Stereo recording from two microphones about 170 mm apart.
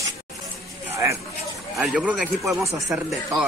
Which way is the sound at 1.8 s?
5° right (ahead or behind).